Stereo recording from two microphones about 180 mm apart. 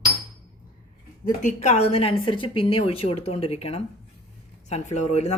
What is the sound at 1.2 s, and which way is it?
Speech, 45° left (ahead or behind).